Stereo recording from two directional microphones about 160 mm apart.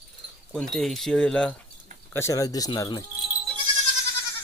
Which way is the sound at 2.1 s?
20° left (ahead or behind).